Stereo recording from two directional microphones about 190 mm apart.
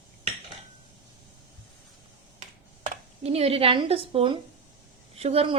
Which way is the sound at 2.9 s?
30° right (ahead or behind).